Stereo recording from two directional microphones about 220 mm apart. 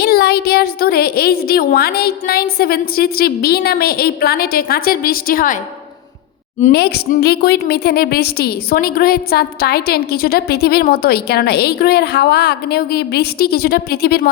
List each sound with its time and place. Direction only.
0.0 s a woman's voice: 45° left (ahead or behind)
6.7 s a woman's voice: 50° left (ahead or behind)